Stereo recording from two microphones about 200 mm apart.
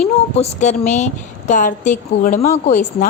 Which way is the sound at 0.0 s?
35° left (ahead or behind).